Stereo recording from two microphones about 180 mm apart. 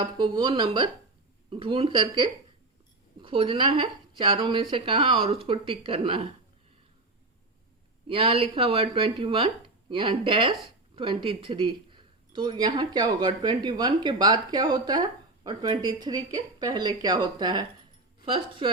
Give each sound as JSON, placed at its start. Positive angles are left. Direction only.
{"t": 0.0, "sound": "speech", "side_deg": -25}
{"t": 8.0, "sound": "speech", "side_deg": -30}